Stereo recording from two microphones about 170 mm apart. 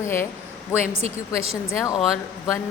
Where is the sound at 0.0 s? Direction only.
15° left (ahead or behind).